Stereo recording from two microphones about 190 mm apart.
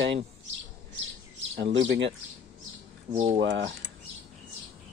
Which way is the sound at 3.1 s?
35° right (ahead or behind).